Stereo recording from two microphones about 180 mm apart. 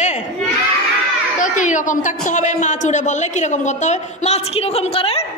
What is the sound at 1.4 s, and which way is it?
A woman's voice, 45° left (ahead or behind).